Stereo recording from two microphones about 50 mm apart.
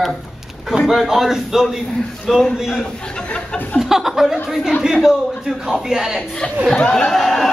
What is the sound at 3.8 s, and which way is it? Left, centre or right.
A man's voice, centre.